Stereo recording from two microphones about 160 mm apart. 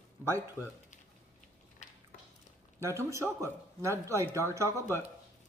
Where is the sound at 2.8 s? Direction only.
15° right (ahead or behind).